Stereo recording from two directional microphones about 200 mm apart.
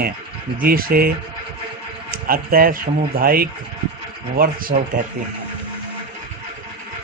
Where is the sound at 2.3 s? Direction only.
45° right (ahead or behind).